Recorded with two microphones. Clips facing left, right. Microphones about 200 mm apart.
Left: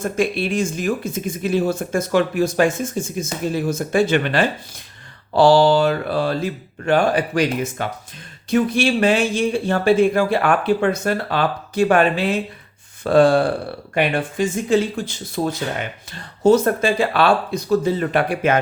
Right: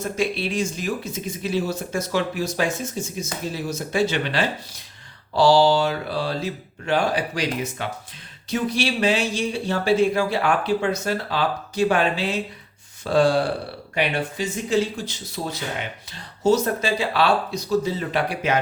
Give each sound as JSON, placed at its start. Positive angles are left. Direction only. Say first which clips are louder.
{"t": 0.0, "sound": "speech", "louder": "left 4 dB", "side_deg": 50}